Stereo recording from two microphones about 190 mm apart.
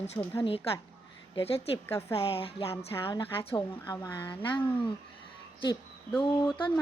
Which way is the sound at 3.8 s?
10° left (ahead or behind).